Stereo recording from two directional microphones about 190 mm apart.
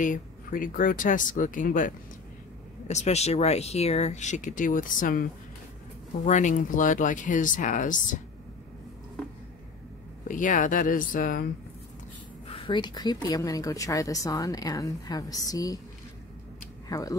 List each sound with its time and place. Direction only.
0.0 s speech: 45° left (ahead or behind)
10.2 s speech: 45° left (ahead or behind)
12.4 s a woman's voice: 25° left (ahead or behind)
16.9 s speech: 20° left (ahead or behind)